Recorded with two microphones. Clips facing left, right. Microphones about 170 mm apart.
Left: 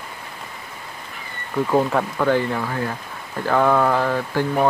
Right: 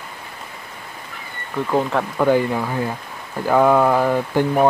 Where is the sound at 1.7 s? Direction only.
5° left (ahead or behind).